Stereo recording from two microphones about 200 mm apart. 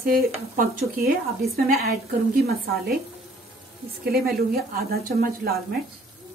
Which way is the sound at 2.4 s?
50° right (ahead or behind).